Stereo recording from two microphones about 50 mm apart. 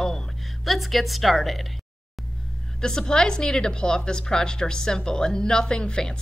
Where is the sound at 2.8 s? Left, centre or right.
Centre.